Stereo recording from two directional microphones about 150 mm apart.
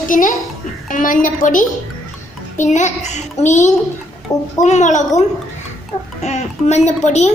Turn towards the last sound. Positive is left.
turn(degrees=45)  # may be behind; listen again after turning